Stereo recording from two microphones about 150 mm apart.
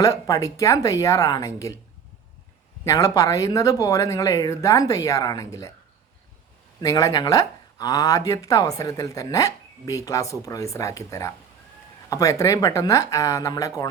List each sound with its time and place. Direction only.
0.0 s speech: 25° left (ahead or behind)
2.8 s speech: 20° left (ahead or behind)
6.8 s speech: 25° left (ahead or behind)